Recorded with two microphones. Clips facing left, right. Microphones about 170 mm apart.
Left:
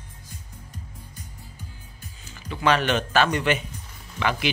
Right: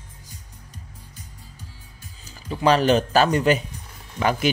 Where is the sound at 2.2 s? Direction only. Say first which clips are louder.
Right 3 dB; 35° right (ahead or behind).